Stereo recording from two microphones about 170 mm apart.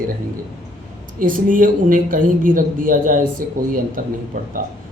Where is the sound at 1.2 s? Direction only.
55° right (ahead or behind).